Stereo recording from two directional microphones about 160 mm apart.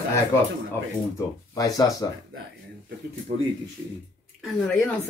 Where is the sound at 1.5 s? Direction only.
20° left (ahead or behind).